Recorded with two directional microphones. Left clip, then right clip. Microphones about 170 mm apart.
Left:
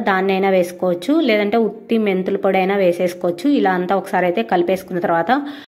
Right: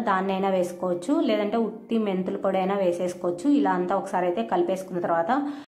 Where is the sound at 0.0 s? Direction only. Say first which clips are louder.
Left 8 dB; 25° left (ahead or behind).